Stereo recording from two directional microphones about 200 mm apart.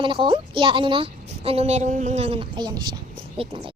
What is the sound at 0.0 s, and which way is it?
A woman's voice, 25° right (ahead or behind).